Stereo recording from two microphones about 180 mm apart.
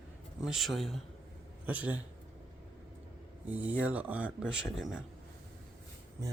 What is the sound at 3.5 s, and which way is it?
Speech, 10° right (ahead or behind).